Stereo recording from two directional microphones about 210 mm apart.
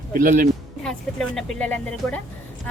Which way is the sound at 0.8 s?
Centre (ahead or behind).